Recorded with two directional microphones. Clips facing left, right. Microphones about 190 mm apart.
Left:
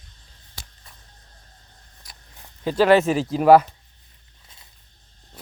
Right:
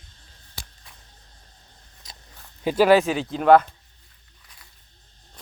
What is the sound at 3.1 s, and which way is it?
Speech, 5° left (ahead or behind).